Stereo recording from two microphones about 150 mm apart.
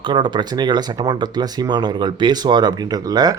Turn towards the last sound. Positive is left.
turn(degrees=-25)  # may be behind; listen again after turning